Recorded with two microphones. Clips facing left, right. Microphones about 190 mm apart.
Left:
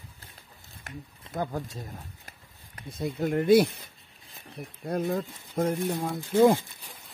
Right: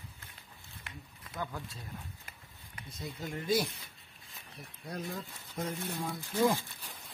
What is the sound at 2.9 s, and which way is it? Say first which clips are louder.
Speech: left 13 dB; 60° left (ahead or behind).